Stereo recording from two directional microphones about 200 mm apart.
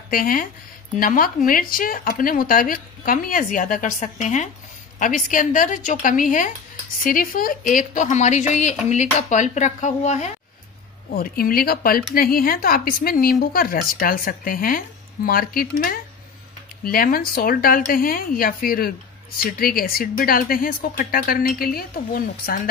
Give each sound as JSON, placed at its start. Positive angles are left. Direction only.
{"t": 0.1, "sound": "a woman's voice", "side_deg": 45}
{"t": 11.1, "sound": "speech", "side_deg": 45}